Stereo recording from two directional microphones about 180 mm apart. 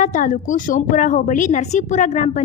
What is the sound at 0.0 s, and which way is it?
A woman's voice, 45° left (ahead or behind).